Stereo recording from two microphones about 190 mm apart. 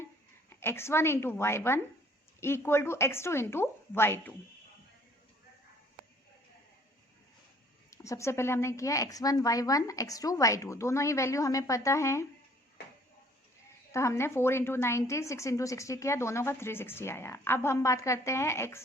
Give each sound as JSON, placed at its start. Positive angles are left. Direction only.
{"t": 0.5, "sound": "a woman's voice", "side_deg": 10}
{"t": 7.9, "sound": "a woman's voice", "side_deg": 15}
{"t": 13.9, "sound": "a woman's voice", "side_deg": 15}